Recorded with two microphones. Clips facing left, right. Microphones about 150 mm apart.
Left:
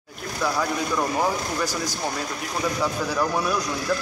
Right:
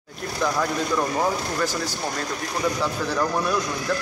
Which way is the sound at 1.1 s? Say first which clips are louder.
Even; 10° left (ahead or behind).